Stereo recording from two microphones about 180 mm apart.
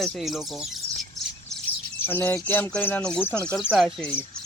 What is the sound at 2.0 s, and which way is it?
Speech, 10° left (ahead or behind).